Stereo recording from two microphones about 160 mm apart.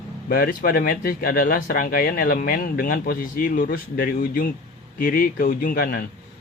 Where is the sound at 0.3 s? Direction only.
65° left (ahead or behind).